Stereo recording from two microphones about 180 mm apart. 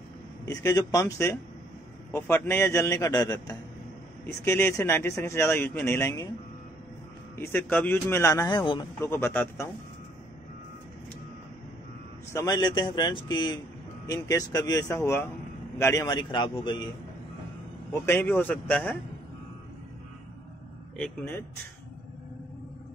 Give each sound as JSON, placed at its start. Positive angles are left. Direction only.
{"t": 0.5, "sound": "speech", "side_deg": 20}
{"t": 7.3, "sound": "speech", "side_deg": 10}
{"t": 9.1, "sound": "speech", "side_deg": 10}
{"t": 12.3, "sound": "a man's voice", "side_deg": 20}
{"t": 18.0, "sound": "speech", "side_deg": 10}
{"t": 21.0, "sound": "speech", "side_deg": 10}